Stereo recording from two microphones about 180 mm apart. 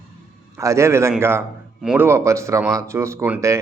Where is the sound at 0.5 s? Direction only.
15° right (ahead or behind).